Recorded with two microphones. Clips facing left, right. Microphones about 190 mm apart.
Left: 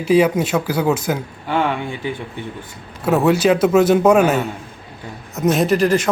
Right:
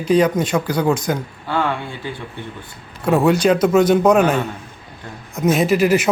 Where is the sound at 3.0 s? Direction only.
5° left (ahead or behind).